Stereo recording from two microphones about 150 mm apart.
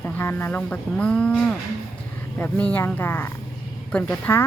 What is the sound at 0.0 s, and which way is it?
Speech, 15° left (ahead or behind).